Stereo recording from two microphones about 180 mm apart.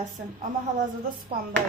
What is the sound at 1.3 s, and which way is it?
Speech, 55° right (ahead or behind).